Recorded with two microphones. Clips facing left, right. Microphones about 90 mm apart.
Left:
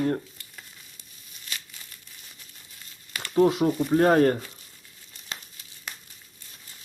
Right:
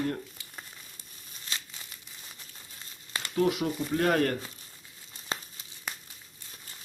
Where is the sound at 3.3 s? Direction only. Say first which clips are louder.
Left 7 dB; 30° left (ahead or behind).